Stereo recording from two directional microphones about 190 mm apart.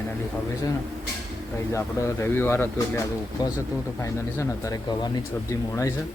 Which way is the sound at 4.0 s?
15° left (ahead or behind).